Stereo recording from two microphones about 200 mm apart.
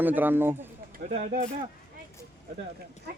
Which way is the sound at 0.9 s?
45° right (ahead or behind).